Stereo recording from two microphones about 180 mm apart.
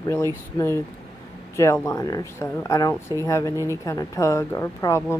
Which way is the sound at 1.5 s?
15° left (ahead or behind).